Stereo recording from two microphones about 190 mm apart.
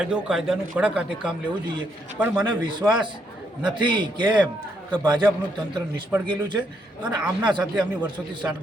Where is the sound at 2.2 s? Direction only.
20° right (ahead or behind).